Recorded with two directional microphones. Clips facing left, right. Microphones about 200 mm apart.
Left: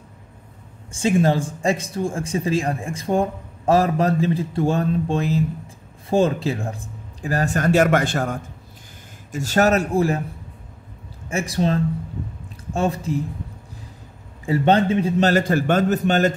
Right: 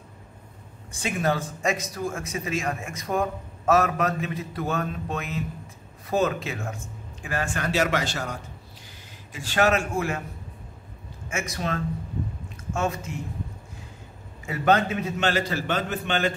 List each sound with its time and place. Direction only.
0.9 s a man's voice: 30° left (ahead or behind)
11.2 s a man's voice: 30° left (ahead or behind)
14.4 s a man's voice: 30° left (ahead or behind)